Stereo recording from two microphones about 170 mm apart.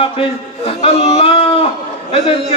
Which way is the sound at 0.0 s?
35° left (ahead or behind).